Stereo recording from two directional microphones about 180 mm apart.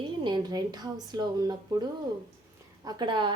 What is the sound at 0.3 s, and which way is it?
Speech, 20° right (ahead or behind).